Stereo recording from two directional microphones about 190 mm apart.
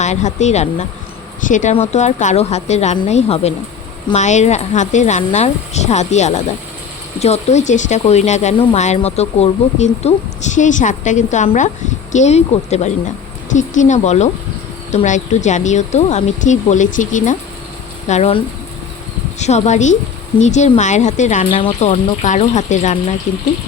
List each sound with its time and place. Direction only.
0.0 s speech: 40° left (ahead or behind)
18.1 s speech: 30° left (ahead or behind)